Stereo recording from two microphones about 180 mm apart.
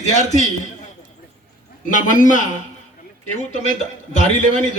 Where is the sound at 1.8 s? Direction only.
45° left (ahead or behind).